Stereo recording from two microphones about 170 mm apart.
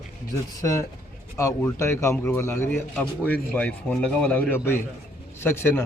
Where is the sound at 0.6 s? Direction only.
20° left (ahead or behind).